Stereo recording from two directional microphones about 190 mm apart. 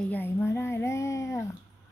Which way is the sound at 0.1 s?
10° left (ahead or behind).